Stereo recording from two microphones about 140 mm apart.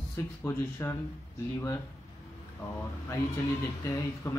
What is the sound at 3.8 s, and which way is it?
Speech, 20° left (ahead or behind).